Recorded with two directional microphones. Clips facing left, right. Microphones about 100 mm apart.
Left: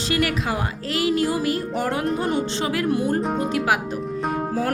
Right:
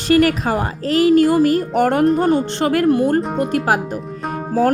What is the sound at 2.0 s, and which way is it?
Speech, 45° right (ahead or behind).